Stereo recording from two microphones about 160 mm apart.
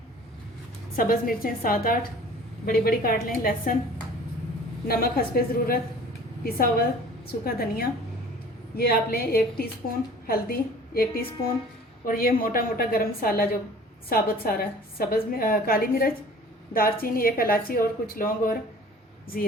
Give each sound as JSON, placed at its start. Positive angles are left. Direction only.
{"t": 0.9, "sound": "a woman's voice", "side_deg": 65}
{"t": 4.9, "sound": "a woman's voice", "side_deg": 70}